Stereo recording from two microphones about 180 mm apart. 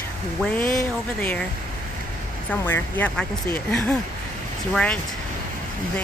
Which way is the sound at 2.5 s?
10° left (ahead or behind).